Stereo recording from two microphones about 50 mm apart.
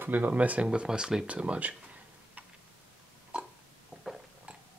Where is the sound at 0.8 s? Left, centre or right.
Centre.